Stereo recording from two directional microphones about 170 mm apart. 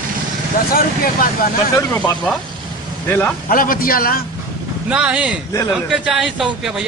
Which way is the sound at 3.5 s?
55° left (ahead or behind).